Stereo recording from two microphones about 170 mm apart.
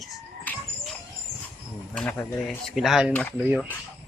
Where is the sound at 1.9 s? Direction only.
10° left (ahead or behind).